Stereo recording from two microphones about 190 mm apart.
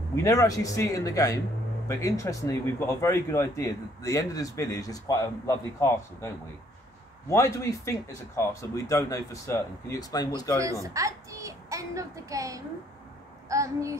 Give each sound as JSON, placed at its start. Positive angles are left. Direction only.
{"t": 0.1, "sound": "speech", "side_deg": 15}
{"t": 10.6, "sound": "a child's voice", "side_deg": -15}